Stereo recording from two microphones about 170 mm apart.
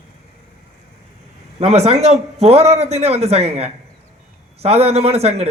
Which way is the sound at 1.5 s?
40° right (ahead or behind).